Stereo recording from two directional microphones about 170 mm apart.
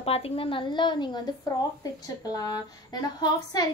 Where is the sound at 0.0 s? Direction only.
35° left (ahead or behind).